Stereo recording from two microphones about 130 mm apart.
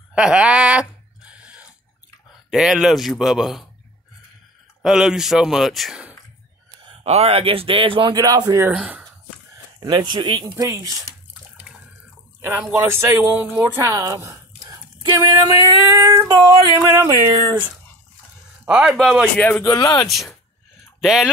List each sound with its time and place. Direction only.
0.1 s a sound: 10° right (ahead or behind)
2.5 s a man's voice: 5° right (ahead or behind)
4.8 s a man's voice: 5° right (ahead or behind)
7.0 s speech: 55° right (ahead or behind)
8.2 s speech: 30° right (ahead or behind)
8.7 s speech: 5° right (ahead or behind)
9.8 s speech: 30° right (ahead or behind)
12.4 s speech: 10° right (ahead or behind); by 15.8 s 35° right (ahead or behind)
16.1 s female singing: 20° right (ahead or behind)
17.0 s speech: 25° right (ahead or behind)
18.7 s speech: 5° right (ahead or behind)
19.3 s a man's voice: 10° left (ahead or behind)
19.6 s speech: 25° left (ahead or behind)
20.1 s a man's voice: centre (ahead or behind)